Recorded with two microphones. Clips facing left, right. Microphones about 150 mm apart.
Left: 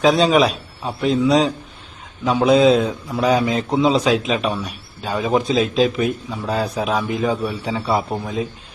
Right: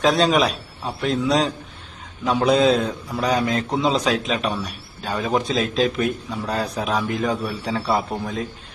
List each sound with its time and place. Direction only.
0.0 s a man's voice: centre (ahead or behind)